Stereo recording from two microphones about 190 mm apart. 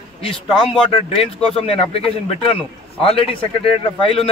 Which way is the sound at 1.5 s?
30° left (ahead or behind).